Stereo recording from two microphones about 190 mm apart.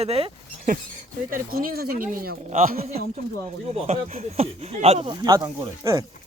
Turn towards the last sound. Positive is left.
turn(degrees=-20)  # may be behind; listen again after turning